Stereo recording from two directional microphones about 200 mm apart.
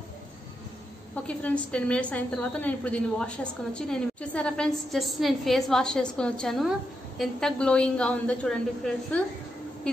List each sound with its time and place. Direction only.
1.1 s a woman's voice: 5° left (ahead or behind)